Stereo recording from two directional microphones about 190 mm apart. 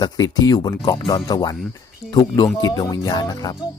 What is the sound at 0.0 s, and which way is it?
Speech, 20° left (ahead or behind).